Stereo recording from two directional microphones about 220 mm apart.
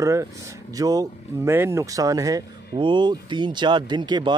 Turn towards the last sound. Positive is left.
turn(degrees=-20)  # may be behind; listen again after turning